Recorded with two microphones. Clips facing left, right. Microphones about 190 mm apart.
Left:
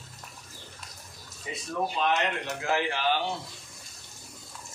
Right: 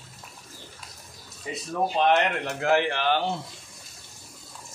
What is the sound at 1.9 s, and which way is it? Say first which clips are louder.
Speech: right 7 dB; 60° right (ahead or behind).